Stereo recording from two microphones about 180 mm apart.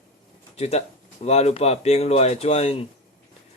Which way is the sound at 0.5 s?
35° left (ahead or behind).